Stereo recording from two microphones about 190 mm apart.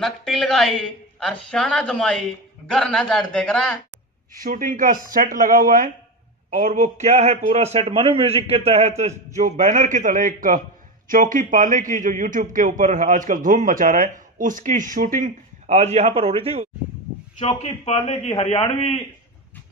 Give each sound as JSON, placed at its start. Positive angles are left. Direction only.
{"t": 0.0, "sound": "a man's voice", "side_deg": 5}
{"t": 4.3, "sound": "a man's voice", "side_deg": -45}
{"t": 17.4, "sound": "a man's voice", "side_deg": 35}